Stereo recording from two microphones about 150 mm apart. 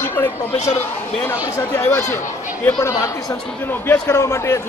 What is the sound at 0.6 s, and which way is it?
Speech, 45° left (ahead or behind).